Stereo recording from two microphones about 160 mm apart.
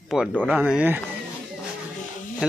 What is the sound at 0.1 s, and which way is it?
Speech, 5° right (ahead or behind).